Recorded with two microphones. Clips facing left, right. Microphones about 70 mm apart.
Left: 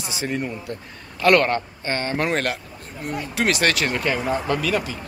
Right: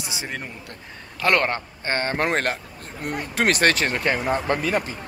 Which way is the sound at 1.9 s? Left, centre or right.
Right.